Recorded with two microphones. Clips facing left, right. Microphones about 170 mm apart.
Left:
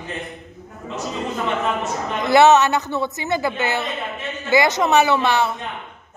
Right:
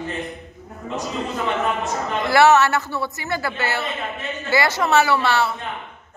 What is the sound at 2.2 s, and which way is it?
A woman's voice, 20° left (ahead or behind).